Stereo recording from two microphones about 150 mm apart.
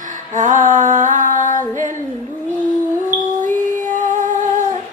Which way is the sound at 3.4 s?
55° right (ahead or behind).